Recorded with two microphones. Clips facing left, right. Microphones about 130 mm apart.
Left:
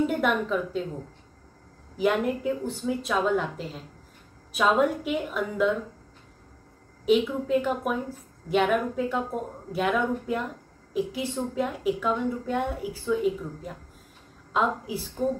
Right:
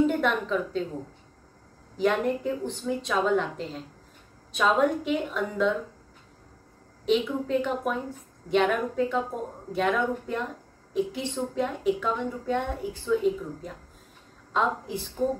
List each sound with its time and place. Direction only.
0.0 s a woman's voice: 10° left (ahead or behind)
2.0 s a woman's voice: 5° left (ahead or behind)
7.1 s a woman's voice: 5° left (ahead or behind)